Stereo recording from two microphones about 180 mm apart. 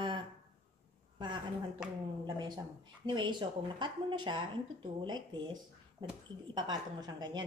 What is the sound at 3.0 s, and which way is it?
Speech, 25° right (ahead or behind).